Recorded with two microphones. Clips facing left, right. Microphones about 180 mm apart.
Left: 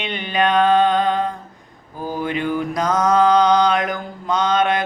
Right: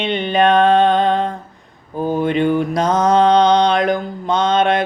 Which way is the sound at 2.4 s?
25° right (ahead or behind).